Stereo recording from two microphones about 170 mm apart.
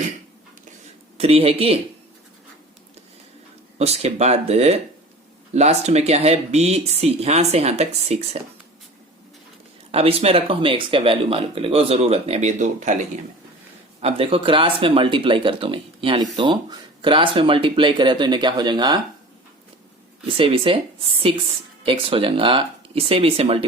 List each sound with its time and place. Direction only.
1.2 s speech: 35° right (ahead or behind)
3.8 s speech: 40° right (ahead or behind)
9.9 s speech: 35° right (ahead or behind)
14.0 s speech: 35° right (ahead or behind)
20.2 s speech: 30° right (ahead or behind)